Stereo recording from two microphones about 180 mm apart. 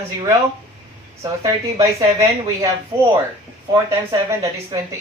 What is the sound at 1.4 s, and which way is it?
Speech, 15° right (ahead or behind).